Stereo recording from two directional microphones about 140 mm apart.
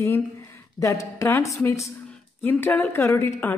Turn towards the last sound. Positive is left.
turn(degrees=15)  # may be behind; listen again after turning